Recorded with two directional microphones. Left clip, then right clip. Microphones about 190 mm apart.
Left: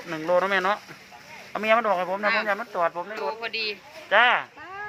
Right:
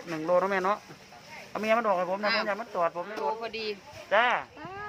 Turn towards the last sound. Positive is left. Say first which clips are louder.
# left 5 dB
turn(degrees=5)  # may be behind; listen again after turning